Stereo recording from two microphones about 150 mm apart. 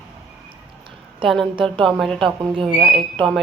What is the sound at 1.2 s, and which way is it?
Speech, centre (ahead or behind).